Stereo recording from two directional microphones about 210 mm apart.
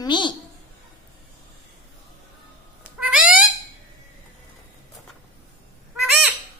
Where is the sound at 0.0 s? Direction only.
20° left (ahead or behind).